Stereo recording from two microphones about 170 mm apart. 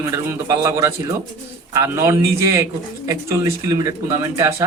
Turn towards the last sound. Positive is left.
turn(degrees=-15)  # may be behind; listen again after turning